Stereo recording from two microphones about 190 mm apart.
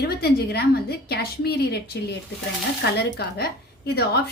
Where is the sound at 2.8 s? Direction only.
60° left (ahead or behind).